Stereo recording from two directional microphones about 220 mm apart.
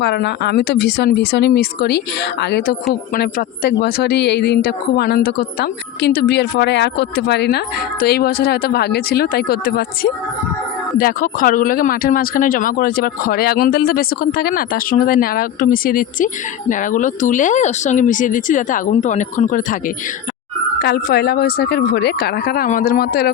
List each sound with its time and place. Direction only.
0.0 s speech: 50° left (ahead or behind)
20.8 s speech: 45° left (ahead or behind)